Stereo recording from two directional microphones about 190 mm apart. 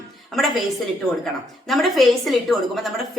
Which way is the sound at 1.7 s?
Centre (ahead or behind).